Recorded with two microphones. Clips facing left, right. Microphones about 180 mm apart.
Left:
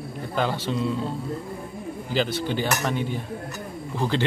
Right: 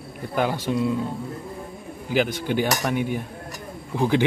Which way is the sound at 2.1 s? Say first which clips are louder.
Right 3 dB; 15° right (ahead or behind).